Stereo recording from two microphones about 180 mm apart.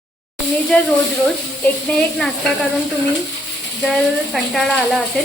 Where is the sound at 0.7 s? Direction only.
5° left (ahead or behind).